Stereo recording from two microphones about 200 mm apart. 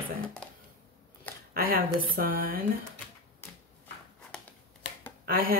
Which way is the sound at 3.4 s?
10° left (ahead or behind).